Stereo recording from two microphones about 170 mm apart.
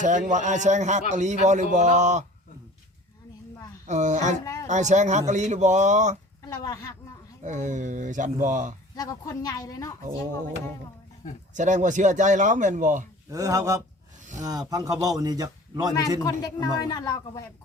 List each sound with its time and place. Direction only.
0.0 s speech: 45° right (ahead or behind)
3.8 s speech: 45° right (ahead or behind)
6.6 s speech: 20° left (ahead or behind)
7.4 s speech: 45° right (ahead or behind)
9.0 s speech: 20° left (ahead or behind)
11.5 s speech: 45° right (ahead or behind)
13.3 s a man's voice: 20° right (ahead or behind)
16.2 s speech: 25° left (ahead or behind)